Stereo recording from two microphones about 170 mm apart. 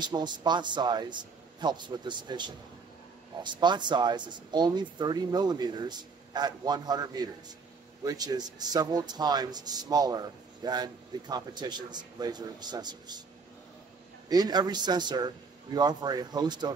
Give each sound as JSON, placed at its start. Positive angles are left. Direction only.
{"t": 0.0, "sound": "speech", "side_deg": -25}
{"t": 14.3, "sound": "speech", "side_deg": -25}